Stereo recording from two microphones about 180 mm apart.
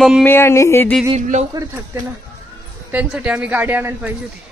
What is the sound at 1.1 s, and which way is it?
Speech, 40° right (ahead or behind).